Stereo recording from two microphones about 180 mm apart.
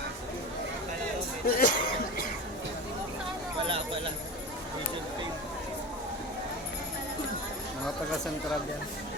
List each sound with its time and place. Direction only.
1.5 s speech: 55° left (ahead or behind)